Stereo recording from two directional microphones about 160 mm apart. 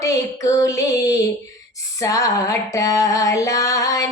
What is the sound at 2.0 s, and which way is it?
Music, 20° left (ahead or behind).